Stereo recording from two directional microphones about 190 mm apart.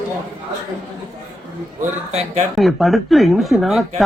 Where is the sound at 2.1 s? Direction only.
35° right (ahead or behind).